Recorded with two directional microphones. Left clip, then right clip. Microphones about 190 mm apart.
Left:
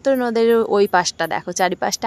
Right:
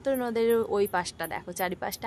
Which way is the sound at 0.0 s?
40° left (ahead or behind).